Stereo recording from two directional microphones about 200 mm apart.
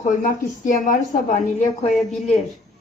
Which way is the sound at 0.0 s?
40° left (ahead or behind).